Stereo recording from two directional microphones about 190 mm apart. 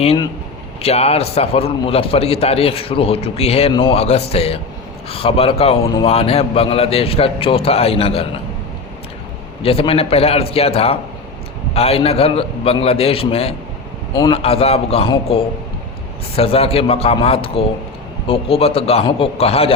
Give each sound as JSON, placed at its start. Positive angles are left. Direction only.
{"t": 0.0, "sound": "a man's voice", "side_deg": 30}
{"t": 9.6, "sound": "a man's voice", "side_deg": 30}